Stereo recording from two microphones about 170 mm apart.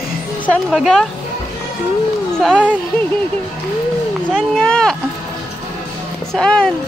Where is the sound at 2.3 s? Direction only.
Centre (ahead or behind).